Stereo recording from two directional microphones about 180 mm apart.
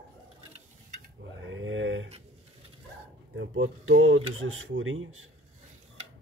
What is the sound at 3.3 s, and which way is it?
Speech, 90° right.